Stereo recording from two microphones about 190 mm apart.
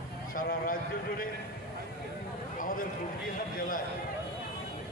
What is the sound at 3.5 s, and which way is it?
Speech, 45° left (ahead or behind).